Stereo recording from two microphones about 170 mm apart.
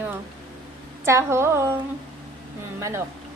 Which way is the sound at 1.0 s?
15° right (ahead or behind).